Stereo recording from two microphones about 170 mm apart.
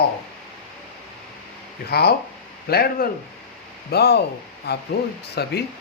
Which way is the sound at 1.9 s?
70° left (ahead or behind).